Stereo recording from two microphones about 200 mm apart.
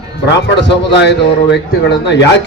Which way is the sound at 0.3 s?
60° left (ahead or behind).